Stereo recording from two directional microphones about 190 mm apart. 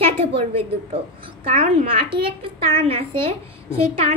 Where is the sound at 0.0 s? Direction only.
30° right (ahead or behind).